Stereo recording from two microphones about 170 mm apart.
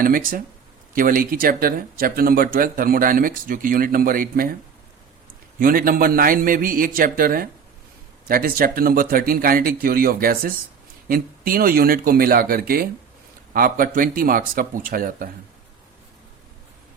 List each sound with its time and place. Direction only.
0.0 s speech: 55° right (ahead or behind)
5.5 s speech: 55° right (ahead or behind)